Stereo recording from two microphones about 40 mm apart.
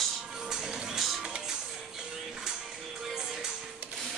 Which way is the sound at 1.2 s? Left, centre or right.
Centre.